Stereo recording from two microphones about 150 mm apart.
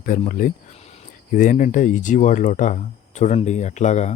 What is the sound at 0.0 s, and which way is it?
Speech, 65° left (ahead or behind).